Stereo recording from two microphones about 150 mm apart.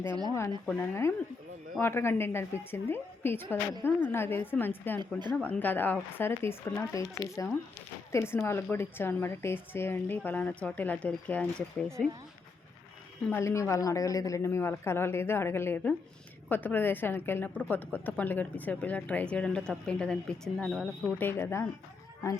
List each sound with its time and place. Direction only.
0.0 s speech: 30° right (ahead or behind)
0.8 s a woman's voice: 15° left (ahead or behind)
13.2 s a woman's voice: 15° left (ahead or behind)